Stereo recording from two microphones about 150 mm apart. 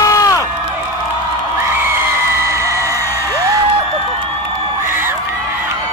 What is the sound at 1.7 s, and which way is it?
Music, 15° right (ahead or behind).